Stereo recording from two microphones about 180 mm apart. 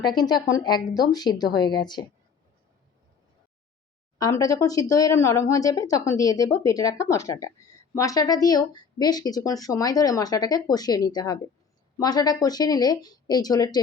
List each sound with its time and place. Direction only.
0.0 s speech: 25° left (ahead or behind)
4.2 s speech: 20° left (ahead or behind)